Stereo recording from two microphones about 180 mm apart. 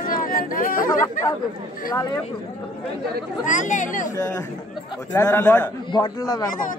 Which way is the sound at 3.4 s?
45° left (ahead or behind).